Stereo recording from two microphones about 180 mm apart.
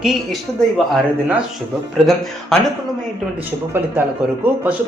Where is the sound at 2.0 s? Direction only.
Centre (ahead or behind).